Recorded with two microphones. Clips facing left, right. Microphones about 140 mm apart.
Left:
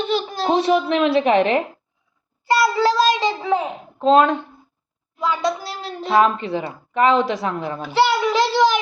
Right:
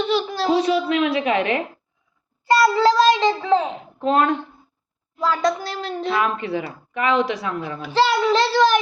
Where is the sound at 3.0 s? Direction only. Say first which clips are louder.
Right 2 dB; 15° left (ahead or behind).